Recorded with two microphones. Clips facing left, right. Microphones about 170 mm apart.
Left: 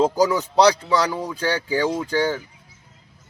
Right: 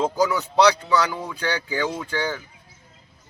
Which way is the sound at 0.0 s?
35° left (ahead or behind).